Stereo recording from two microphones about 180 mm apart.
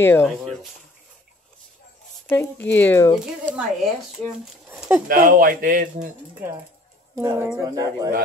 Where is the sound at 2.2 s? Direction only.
10° left (ahead or behind).